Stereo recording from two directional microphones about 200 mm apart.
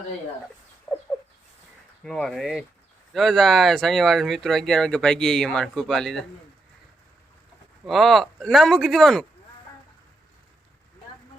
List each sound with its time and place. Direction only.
0.9 s fowl: 15° left (ahead or behind)
2.0 s speech: centre (ahead or behind)
7.9 s speech: centre (ahead or behind)